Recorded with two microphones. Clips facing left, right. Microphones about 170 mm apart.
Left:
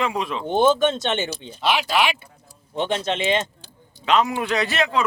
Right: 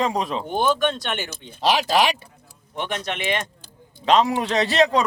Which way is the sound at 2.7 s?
25° left (ahead or behind).